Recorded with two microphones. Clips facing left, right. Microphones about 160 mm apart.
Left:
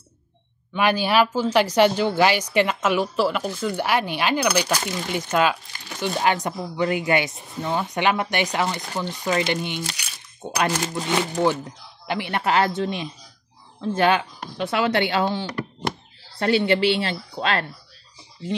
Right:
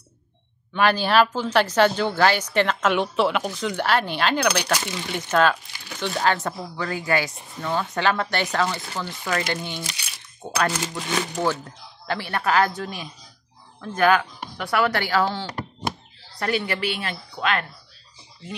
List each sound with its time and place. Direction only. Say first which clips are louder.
0.7 s speech: even; 10° left (ahead or behind); by 17.6 s 30° left (ahead or behind)